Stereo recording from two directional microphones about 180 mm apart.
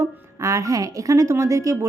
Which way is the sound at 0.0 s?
15° right (ahead or behind).